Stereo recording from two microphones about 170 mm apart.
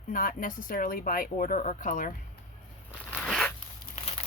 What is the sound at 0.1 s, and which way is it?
Speech, 55° left (ahead or behind).